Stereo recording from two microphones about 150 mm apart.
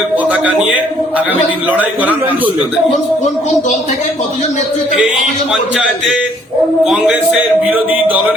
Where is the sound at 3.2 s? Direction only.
50° left (ahead or behind).